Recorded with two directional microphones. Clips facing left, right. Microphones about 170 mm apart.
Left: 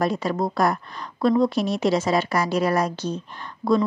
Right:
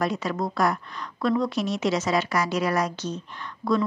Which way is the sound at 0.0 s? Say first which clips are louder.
Left 3 dB; 35° left (ahead or behind).